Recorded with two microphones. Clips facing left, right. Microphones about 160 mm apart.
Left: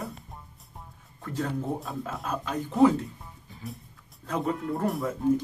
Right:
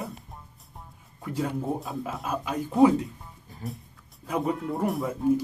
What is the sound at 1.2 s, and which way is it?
Speech, 10° right (ahead or behind).